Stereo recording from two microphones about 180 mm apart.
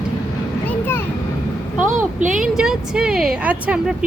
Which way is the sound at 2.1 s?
45° right (ahead or behind).